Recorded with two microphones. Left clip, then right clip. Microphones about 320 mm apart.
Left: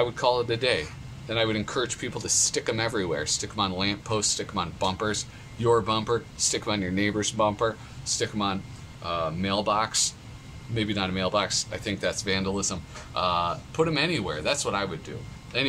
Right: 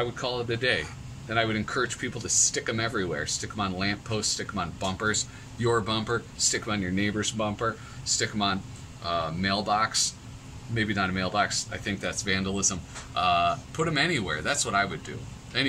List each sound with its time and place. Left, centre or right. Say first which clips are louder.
0.0 s speech: left 6 dB; centre